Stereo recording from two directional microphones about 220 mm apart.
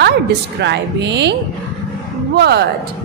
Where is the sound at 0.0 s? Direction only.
50° right (ahead or behind).